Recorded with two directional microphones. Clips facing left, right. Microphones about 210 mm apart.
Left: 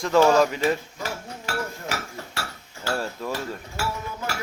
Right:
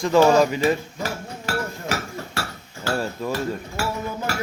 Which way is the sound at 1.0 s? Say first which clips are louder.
Right 3 dB; 45° right (ahead or behind).